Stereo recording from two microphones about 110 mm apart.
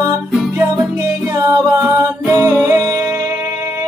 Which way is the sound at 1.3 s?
30° right (ahead or behind).